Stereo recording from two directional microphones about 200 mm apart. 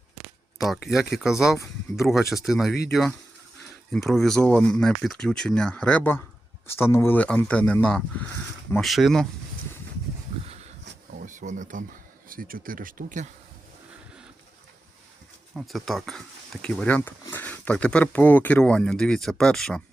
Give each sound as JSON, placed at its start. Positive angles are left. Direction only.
{"t": 0.6, "sound": "speech", "side_deg": 0}
{"t": 3.9, "sound": "speech", "side_deg": 0}
{"t": 11.3, "sound": "a sound", "side_deg": -40}
{"t": 12.3, "sound": "speech", "side_deg": -45}
{"t": 15.5, "sound": "speech", "side_deg": 0}